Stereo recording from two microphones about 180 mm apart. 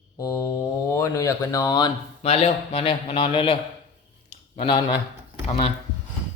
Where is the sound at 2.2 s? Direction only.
35° left (ahead or behind).